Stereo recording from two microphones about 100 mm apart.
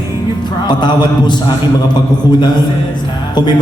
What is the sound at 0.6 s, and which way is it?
Speech, 45° left (ahead or behind).